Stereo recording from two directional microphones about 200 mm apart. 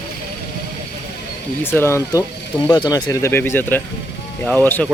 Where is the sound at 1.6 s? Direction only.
10° left (ahead or behind).